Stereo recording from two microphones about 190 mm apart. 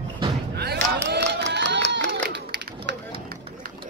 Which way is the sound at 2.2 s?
60° right (ahead or behind).